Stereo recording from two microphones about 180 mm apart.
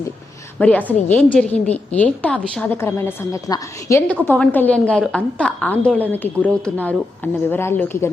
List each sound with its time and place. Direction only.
0.6 s a woman's voice: 10° left (ahead or behind)